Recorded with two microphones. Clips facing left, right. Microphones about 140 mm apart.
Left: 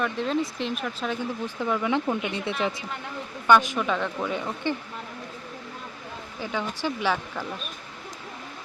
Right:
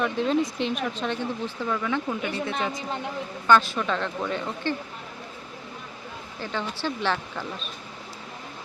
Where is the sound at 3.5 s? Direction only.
15° left (ahead or behind).